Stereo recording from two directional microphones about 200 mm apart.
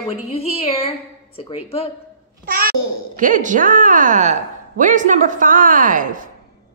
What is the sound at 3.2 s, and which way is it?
A woman's voice, 40° right (ahead or behind).